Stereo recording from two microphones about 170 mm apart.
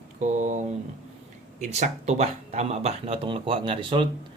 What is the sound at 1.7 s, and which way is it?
A man's voice, 40° right (ahead or behind).